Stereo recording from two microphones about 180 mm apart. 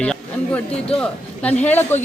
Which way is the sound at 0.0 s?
5° left (ahead or behind).